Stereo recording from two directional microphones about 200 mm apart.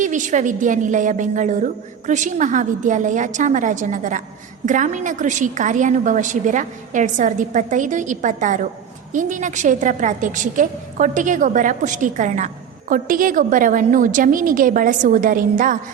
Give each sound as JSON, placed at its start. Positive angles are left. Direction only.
{"t": 0.0, "sound": "a woman's voice", "side_deg": -40}